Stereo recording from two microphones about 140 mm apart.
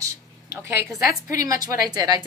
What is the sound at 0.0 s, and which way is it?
A woman's voice, 20° right (ahead or behind).